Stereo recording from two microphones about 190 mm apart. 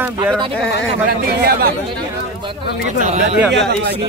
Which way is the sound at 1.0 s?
55° right (ahead or behind).